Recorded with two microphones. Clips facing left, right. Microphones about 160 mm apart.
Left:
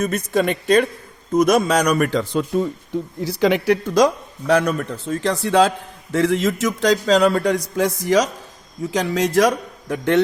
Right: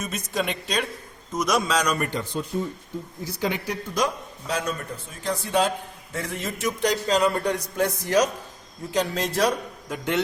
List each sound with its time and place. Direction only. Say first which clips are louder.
0.0 s a man's voice: left 9 dB; 60° left (ahead or behind); by 9.5 s 85° left
9.9 s a man's voice: left 8 dB; 60° left (ahead or behind)